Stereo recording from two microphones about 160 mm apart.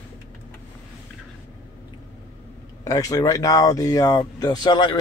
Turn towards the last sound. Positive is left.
turn(degrees=30)  # may be behind; listen again after turning